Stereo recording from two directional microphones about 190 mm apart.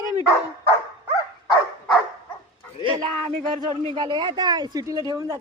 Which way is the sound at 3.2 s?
25° right (ahead or behind).